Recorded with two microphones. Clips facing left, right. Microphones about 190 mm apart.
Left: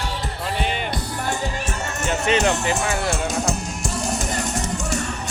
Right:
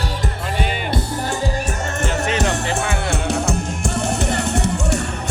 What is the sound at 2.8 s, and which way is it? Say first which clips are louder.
Music: right 1 dB; 60° right (ahead or behind).